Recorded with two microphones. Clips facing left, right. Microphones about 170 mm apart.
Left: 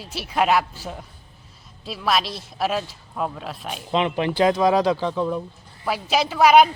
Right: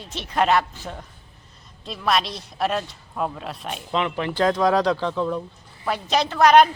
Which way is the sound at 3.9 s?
20° left (ahead or behind).